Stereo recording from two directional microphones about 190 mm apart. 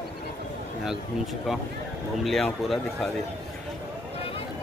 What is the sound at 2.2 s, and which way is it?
Speech, centre (ahead or behind).